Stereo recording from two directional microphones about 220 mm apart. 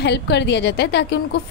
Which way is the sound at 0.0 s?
50° left (ahead or behind).